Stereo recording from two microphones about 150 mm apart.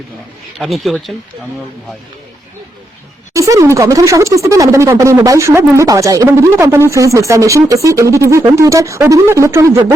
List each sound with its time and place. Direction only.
0.6 s speech: centre (ahead or behind)
3.3 s speech: 20° right (ahead or behind)